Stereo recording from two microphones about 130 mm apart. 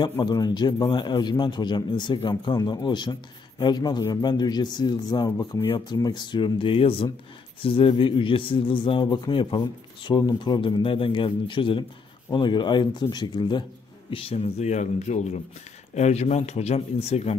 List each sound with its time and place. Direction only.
0.0 s a man's voice: 35° left (ahead or behind)
14.1 s speech: 50° left (ahead or behind)